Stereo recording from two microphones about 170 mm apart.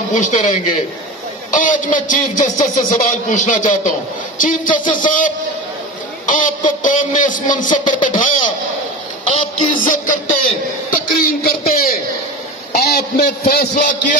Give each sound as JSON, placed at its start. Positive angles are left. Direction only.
{"t": 0.1, "sound": "a man's voice", "side_deg": 45}
{"t": 13.7, "sound": "speech", "side_deg": 50}